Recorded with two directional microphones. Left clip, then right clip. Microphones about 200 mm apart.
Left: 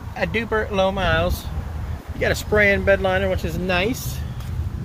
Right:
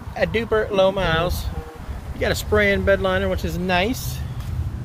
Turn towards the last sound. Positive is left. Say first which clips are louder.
# right 1 dB
turn(degrees=-30)  # may be behind; listen again after turning